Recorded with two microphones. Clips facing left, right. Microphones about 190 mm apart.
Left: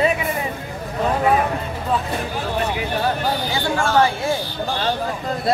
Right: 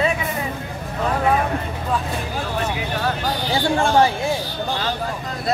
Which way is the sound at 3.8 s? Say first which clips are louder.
Even; 25° right (ahead or behind).